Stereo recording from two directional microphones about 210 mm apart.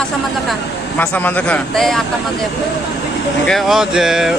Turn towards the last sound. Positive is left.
turn(degrees=0)  # may be behind; listen again after turning